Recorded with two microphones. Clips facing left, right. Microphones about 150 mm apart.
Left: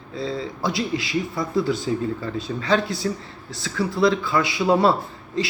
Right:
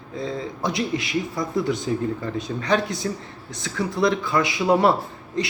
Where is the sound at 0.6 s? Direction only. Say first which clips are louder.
Even; 20° right (ahead or behind).